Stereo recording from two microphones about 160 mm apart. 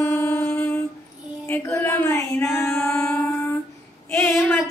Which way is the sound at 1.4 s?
15° left (ahead or behind).